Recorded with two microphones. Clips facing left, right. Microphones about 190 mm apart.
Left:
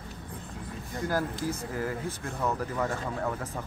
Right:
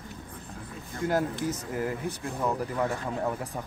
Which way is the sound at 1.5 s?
20° right (ahead or behind).